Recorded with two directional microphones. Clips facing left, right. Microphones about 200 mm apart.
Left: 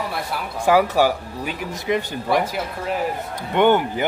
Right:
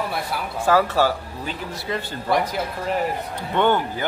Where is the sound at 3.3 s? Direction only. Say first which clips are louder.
Left 4 dB; 15° left (ahead or behind).